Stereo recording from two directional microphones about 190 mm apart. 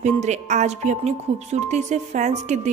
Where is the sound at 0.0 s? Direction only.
35° right (ahead or behind).